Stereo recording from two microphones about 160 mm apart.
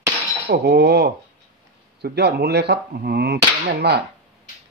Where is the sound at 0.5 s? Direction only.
90° right.